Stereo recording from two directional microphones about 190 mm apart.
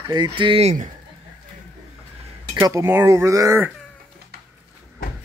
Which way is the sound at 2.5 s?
15° right (ahead or behind).